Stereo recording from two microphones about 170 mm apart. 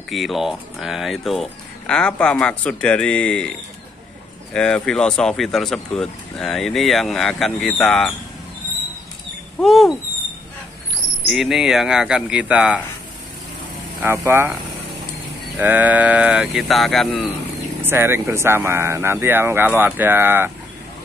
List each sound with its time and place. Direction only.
0.1 s speech: centre (ahead or behind)
4.6 s speech: 5° left (ahead or behind)
9.6 s speech: centre (ahead or behind)
11.2 s speech: centre (ahead or behind)
14.0 s speech: 15° right (ahead or behind)
15.5 s speech: 10° right (ahead or behind)
17.8 s speech: 15° right (ahead or behind)